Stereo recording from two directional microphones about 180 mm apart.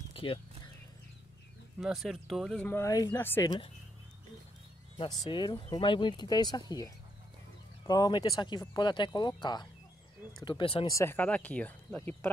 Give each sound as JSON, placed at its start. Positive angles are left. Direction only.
{"t": 0.1, "sound": "horse", "side_deg": 30}
{"t": 1.8, "sound": "speech", "side_deg": 0}
{"t": 5.2, "sound": "speech", "side_deg": 25}
{"t": 7.8, "sound": "speech", "side_deg": 20}
{"t": 10.9, "sound": "speech", "side_deg": 15}